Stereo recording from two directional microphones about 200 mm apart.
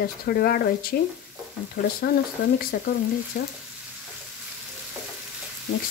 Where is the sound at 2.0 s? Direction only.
50° left (ahead or behind).